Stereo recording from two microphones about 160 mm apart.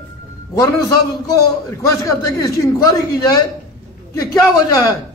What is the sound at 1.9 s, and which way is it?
A man's voice, 20° left (ahead or behind).